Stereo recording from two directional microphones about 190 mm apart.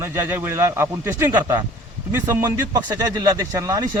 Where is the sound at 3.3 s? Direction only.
15° right (ahead or behind).